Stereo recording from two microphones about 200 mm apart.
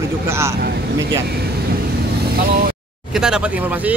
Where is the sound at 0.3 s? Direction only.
15° right (ahead or behind).